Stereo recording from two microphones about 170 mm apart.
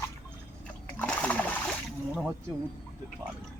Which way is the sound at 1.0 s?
10° left (ahead or behind).